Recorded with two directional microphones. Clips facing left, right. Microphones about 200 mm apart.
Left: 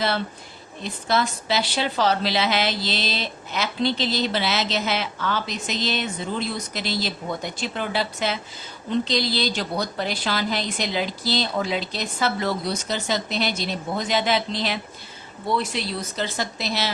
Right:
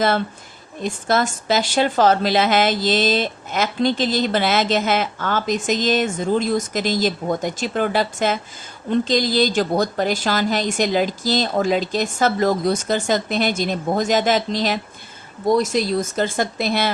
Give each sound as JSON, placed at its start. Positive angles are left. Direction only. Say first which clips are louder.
{"t": 0.8, "sound": "a woman's voice", "louder": "right 4 dB", "side_deg": -45}